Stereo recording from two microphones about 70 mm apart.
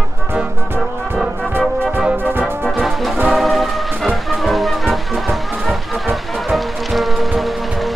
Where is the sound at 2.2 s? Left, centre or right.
Right.